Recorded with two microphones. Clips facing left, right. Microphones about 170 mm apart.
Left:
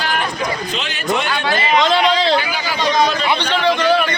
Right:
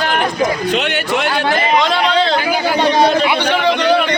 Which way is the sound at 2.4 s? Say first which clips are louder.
Right 5 dB; 50° right (ahead or behind).